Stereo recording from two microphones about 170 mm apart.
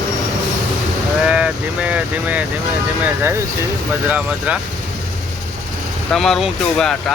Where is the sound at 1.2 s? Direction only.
5° right (ahead or behind).